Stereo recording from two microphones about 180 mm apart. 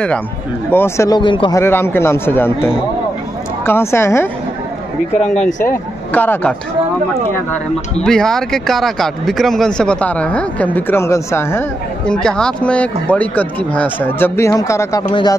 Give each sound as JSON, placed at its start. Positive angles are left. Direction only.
{"t": 0.7, "sound": "speech", "side_deg": 15}
{"t": 1.6, "sound": "speech", "side_deg": 10}
{"t": 5.6, "sound": "speech", "side_deg": 10}
{"t": 8.0, "sound": "speech", "side_deg": 5}
{"t": 12.1, "sound": "speech", "side_deg": 5}